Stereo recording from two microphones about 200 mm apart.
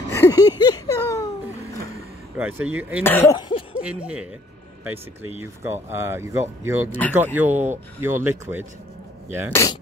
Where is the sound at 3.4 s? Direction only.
25° left (ahead or behind).